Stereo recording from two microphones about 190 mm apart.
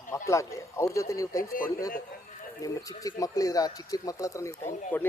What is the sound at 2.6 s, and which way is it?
Speech, 20° left (ahead or behind).